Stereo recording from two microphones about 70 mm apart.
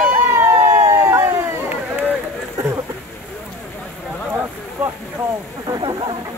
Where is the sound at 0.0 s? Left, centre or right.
Right.